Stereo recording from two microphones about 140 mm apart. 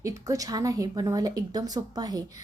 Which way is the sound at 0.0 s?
25° right (ahead or behind).